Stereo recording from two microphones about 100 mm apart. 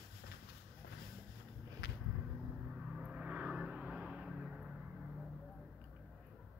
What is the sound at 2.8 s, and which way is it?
Vehicle, 10° right (ahead or behind).